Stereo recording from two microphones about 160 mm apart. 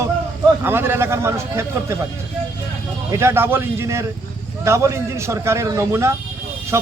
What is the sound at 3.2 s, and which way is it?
A man's voice, 15° right (ahead or behind).